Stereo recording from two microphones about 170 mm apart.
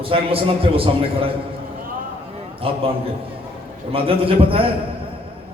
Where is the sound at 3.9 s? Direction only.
35° right (ahead or behind).